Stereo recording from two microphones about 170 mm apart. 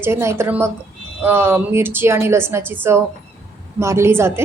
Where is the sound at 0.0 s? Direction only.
15° right (ahead or behind).